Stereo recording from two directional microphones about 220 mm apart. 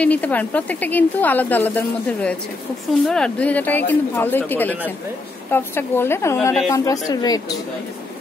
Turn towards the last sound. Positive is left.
turn(degrees=15)  # may be behind; listen again after turning